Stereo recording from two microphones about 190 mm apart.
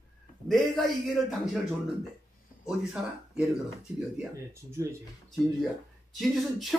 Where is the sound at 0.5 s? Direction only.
Centre (ahead or behind).